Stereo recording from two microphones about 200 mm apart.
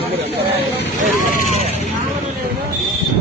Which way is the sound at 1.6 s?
30° left (ahead or behind).